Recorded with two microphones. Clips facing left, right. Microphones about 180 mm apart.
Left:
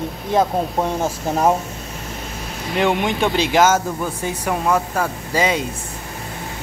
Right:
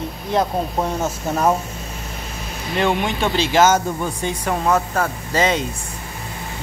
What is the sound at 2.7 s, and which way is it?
Speech, 15° left (ahead or behind).